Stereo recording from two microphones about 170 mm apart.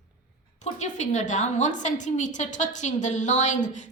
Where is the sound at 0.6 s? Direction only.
45° left (ahead or behind).